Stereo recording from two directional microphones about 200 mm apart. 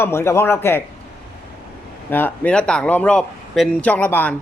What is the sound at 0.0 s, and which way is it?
Speech, 10° left (ahead or behind).